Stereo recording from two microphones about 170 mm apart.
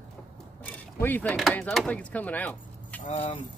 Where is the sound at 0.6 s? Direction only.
10° left (ahead or behind).